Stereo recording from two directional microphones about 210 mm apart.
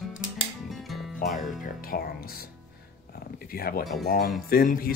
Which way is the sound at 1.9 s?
45° left (ahead or behind).